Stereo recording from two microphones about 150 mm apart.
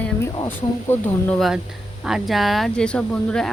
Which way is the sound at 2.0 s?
Centre (ahead or behind).